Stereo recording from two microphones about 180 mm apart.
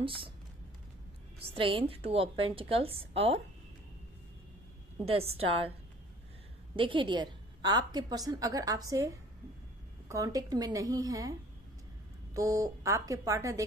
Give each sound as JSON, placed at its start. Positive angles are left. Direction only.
{"t": 1.5, "sound": "a woman's voice", "side_deg": -30}
{"t": 5.1, "sound": "a woman's voice", "side_deg": -35}
{"t": 6.7, "sound": "a woman's voice", "side_deg": -30}
{"t": 12.4, "sound": "a woman's voice", "side_deg": -20}